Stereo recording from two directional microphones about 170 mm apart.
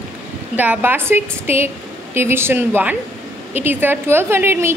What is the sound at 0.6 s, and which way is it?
A woman's voice, 10° right (ahead or behind).